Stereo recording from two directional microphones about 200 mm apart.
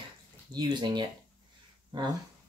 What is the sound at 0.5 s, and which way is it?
Speech, 20° right (ahead or behind).